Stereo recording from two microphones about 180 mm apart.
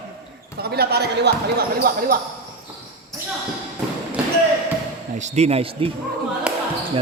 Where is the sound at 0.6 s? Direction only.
60° right (ahead or behind).